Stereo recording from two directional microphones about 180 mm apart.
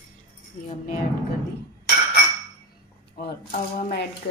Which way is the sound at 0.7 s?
45° left (ahead or behind).